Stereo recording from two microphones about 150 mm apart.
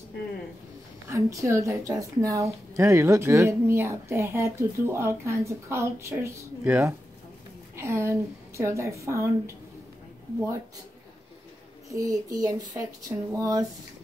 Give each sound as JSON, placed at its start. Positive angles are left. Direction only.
{"t": 1.0, "sound": "a woman's voice", "side_deg": -20}
{"t": 11.9, "sound": "a woman's voice", "side_deg": -20}